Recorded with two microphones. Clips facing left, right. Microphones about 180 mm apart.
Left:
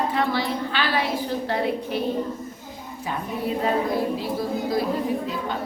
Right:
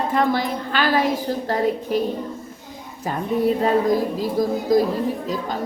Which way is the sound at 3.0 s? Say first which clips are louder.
Right 8 dB; 40° right (ahead or behind).